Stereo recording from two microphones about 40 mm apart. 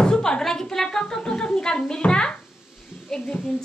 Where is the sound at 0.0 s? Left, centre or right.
Left.